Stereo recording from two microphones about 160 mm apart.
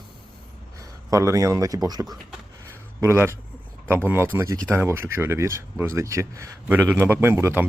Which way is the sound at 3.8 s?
15° right (ahead or behind).